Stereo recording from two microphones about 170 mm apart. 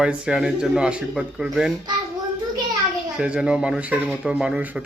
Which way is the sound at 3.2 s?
5° right (ahead or behind).